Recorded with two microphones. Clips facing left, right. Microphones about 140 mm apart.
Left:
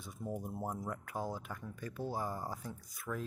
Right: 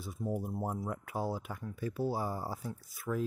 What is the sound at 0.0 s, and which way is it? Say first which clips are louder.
Speech: right 5 dB; 5° right (ahead or behind).